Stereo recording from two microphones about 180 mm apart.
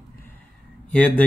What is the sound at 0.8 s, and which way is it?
Speech, 10° left (ahead or behind).